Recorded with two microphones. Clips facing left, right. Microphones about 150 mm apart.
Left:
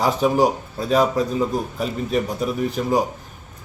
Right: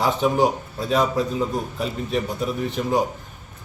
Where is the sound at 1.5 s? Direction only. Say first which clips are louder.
Left 2 dB; 5° left (ahead or behind).